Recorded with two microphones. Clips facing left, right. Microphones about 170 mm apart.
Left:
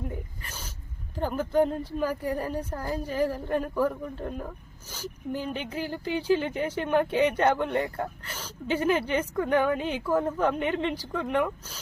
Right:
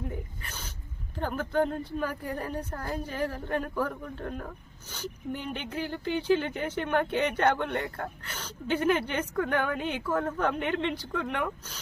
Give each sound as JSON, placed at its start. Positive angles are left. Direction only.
{"t": 1.2, "sound": "a woman's voice", "side_deg": 5}